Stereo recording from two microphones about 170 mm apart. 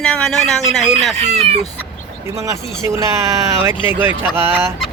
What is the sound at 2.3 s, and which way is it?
Speech, 15° right (ahead or behind).